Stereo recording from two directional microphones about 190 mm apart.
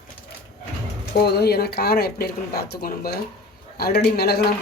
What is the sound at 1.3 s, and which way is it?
Speech, 55° left (ahead or behind).